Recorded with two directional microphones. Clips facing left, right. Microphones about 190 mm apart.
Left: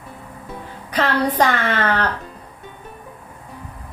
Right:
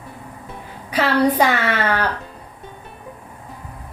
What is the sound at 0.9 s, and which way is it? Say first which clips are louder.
A woman's voice: right 3 dB; 10° right (ahead or behind).